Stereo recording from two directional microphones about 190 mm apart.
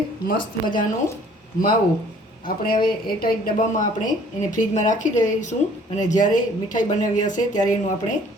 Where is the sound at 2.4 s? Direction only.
50° left (ahead or behind).